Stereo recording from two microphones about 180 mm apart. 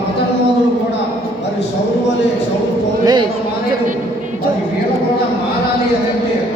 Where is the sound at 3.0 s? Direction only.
20° right (ahead or behind).